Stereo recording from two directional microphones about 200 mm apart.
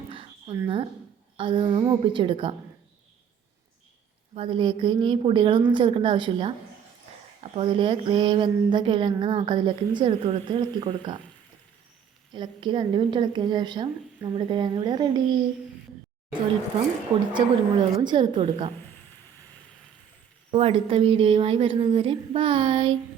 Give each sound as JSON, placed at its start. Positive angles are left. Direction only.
{"t": 0.1, "sound": "a sound", "side_deg": -25}
{"t": 1.4, "sound": "a woman's voice", "side_deg": -25}
{"t": 4.4, "sound": "a woman's voice", "side_deg": -25}
{"t": 12.3, "sound": "a woman's voice", "side_deg": -25}
{"t": 17.3, "sound": "a woman's voice", "side_deg": -20}
{"t": 20.5, "sound": "a woman's voice", "side_deg": -25}